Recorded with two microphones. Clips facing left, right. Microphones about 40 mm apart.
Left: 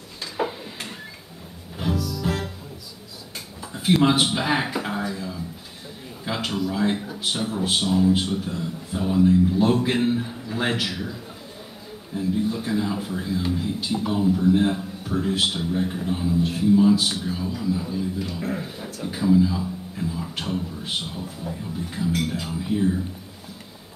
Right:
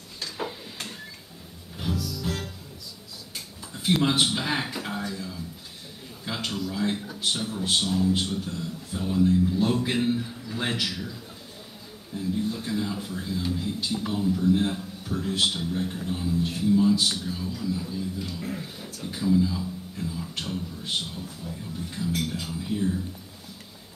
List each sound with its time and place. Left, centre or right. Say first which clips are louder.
0.2 s tick-tock: left 6 dB; centre
2.0 s music: left 4 dB; centre
2.2 s music: left 7 dB; centre
3.7 s a sound: left 4 dB; centre
6.2 s speech: left 5 dB; centre
12.2 s a man's voice: left 4 dB; centre